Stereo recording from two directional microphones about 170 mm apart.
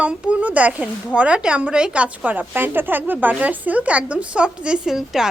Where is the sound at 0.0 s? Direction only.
5° right (ahead or behind).